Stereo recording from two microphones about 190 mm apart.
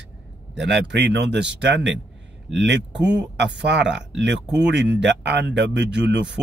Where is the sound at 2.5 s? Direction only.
65° right (ahead or behind).